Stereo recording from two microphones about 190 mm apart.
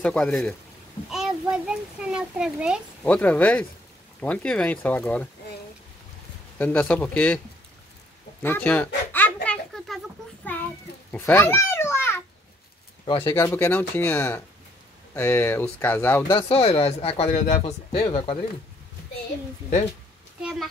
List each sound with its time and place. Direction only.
0.0 s a child's voice: 5° left (ahead or behind)
3.0 s speech: 5° left (ahead or behind)
6.6 s speech: 5° left (ahead or behind)
8.4 s a sound: 10° left (ahead or behind)
13.0 s speech: 30° left (ahead or behind)
13.3 s speech: 15° left (ahead or behind)
16.3 s speech: 30° left (ahead or behind)